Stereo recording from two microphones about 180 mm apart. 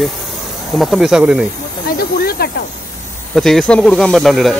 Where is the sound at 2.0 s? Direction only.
60° left (ahead or behind).